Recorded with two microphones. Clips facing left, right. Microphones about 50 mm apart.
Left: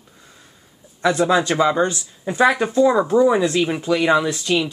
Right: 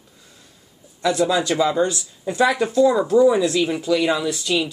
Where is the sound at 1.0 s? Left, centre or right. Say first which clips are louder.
Left 2 dB; left.